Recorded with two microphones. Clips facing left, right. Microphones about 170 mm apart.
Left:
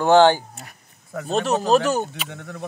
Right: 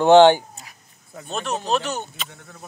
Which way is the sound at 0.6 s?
75° left (ahead or behind).